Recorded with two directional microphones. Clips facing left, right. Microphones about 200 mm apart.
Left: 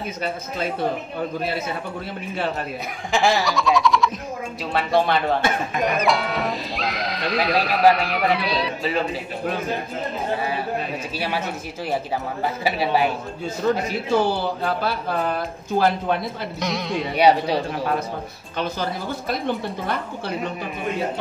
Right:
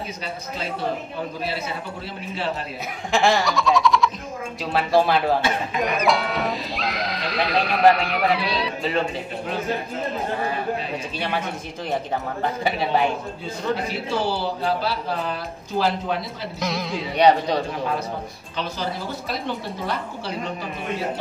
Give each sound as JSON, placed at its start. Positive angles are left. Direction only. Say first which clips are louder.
{"t": 3.1, "sound": "a sound", "louder": "even", "side_deg": 0}
{"t": 4.7, "sound": "speech", "louder": "right 1 dB", "side_deg": 0}
{"t": 11.1, "sound": "speech", "louder": "even", "side_deg": 5}
{"t": 12.6, "sound": "speech", "louder": "left 1 dB", "side_deg": 5}
{"t": 13.7, "sound": "a man's voice", "louder": "left 4 dB", "side_deg": 45}
{"t": 16.5, "sound": "speech", "louder": "left 1 dB", "side_deg": 0}
{"t": 19.4, "sound": "a man's voice", "louder": "left 3 dB", "side_deg": 55}